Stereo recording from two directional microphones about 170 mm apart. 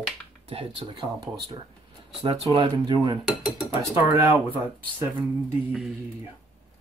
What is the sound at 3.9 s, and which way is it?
Speech, 10° right (ahead or behind).